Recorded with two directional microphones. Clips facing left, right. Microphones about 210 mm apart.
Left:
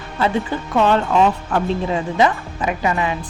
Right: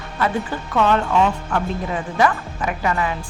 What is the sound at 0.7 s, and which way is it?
A woman's voice, 30° left (ahead or behind).